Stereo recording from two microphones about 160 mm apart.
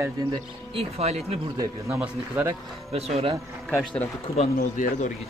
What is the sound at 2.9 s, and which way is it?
Speech, 40° right (ahead or behind).